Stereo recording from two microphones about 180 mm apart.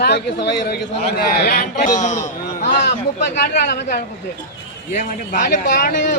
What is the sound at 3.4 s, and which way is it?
Speech, 65° left (ahead or behind).